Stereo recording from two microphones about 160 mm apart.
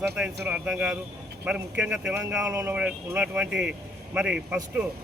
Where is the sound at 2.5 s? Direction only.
20° right (ahead or behind).